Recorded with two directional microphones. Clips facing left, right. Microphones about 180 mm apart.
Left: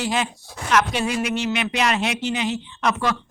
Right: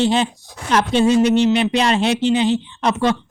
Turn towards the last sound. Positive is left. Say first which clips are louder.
# right 5 dB
turn(degrees=-30)  # may be behind; listen again after turning